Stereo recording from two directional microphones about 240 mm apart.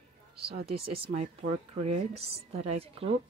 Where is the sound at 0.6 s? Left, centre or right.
Right.